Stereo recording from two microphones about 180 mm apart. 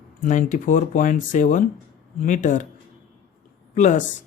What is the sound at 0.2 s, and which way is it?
Speech, 45° left (ahead or behind).